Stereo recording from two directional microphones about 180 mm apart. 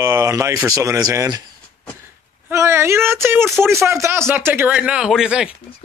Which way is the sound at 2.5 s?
15° right (ahead or behind).